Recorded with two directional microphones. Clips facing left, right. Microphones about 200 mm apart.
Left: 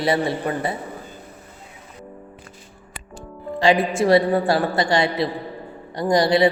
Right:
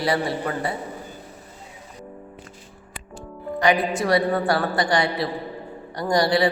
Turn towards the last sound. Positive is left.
turn(degrees=20)  # may be behind; listen again after turning